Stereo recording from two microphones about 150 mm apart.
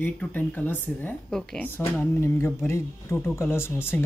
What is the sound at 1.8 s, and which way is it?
Speech, 15° left (ahead or behind).